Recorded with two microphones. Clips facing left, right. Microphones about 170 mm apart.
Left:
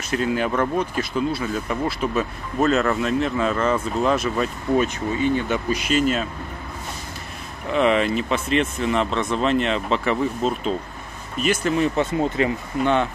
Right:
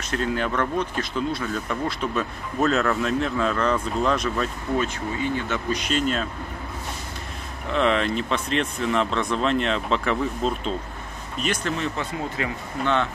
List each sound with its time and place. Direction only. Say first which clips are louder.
0.1 s speech: left 3 dB; 10° left (ahead or behind)
4.7 s speech: left 5 dB; 15° left (ahead or behind)
7.7 s speech: left 3 dB; 5° left (ahead or behind)
12.4 s speech: left 7 dB; 25° left (ahead or behind)
12.8 s speech: left 3 dB; 15° left (ahead or behind)